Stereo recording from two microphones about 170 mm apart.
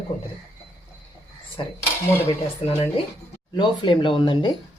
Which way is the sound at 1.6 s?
30° left (ahead or behind).